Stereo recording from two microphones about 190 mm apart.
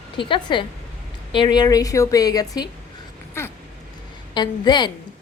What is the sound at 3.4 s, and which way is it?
Cat, 15° left (ahead or behind).